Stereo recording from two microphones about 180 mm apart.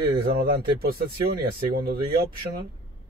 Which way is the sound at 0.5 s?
55° right (ahead or behind).